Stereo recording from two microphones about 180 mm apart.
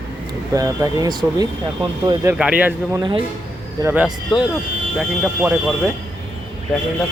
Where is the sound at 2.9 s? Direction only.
25° right (ahead or behind).